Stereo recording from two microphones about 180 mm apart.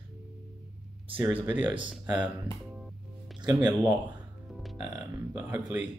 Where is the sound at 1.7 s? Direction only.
25° right (ahead or behind).